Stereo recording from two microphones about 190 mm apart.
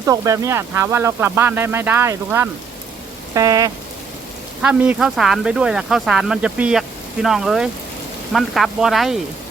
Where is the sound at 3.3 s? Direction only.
15° right (ahead or behind).